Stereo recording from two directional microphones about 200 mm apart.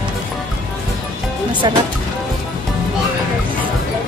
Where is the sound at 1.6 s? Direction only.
20° right (ahead or behind).